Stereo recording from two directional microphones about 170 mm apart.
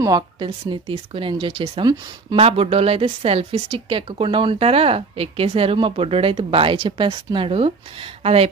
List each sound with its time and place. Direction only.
0.0 s speech: 25° right (ahead or behind)